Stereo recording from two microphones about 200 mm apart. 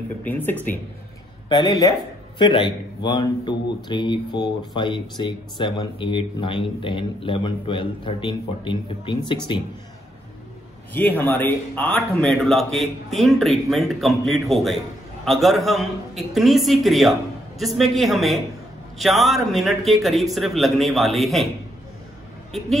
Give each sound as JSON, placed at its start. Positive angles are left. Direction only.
{"t": 0.2, "sound": "speech", "side_deg": 10}
{"t": 1.5, "sound": "a man's voice", "side_deg": 20}
{"t": 10.9, "sound": "a man's voice", "side_deg": 10}